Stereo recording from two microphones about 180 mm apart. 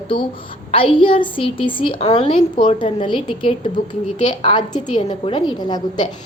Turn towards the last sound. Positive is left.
turn(degrees=25)  # may be behind; listen again after turning